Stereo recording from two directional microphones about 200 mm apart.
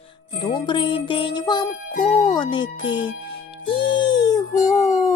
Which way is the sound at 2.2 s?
20° left (ahead or behind).